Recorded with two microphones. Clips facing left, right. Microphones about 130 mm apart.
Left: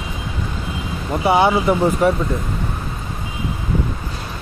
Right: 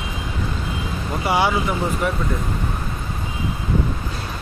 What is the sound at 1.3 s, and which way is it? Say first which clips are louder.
Speech: left 5 dB; 25° left (ahead or behind).